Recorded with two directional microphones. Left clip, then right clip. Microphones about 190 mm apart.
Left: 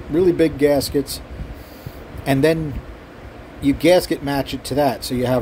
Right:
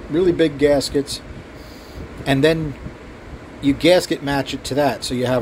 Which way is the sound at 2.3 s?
15° left (ahead or behind).